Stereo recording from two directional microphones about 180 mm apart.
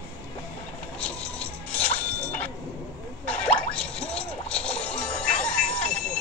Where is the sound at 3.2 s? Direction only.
5° left (ahead or behind).